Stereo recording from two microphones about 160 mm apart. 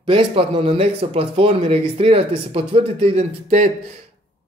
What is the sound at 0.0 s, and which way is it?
Speech, 30° right (ahead or behind).